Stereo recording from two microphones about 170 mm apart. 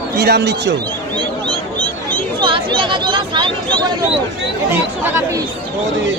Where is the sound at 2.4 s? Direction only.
30° right (ahead or behind).